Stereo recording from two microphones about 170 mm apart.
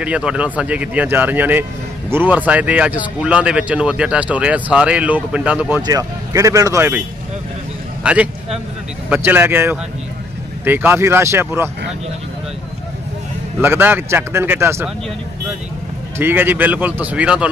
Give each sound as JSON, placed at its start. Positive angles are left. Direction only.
{"t": 0.0, "sound": "speech", "side_deg": -5}
{"t": 5.8, "sound": "speech", "side_deg": -20}
{"t": 8.0, "sound": "a man's voice", "side_deg": -5}
{"t": 13.6, "sound": "speech", "side_deg": -10}
{"t": 16.2, "sound": "speech", "side_deg": -10}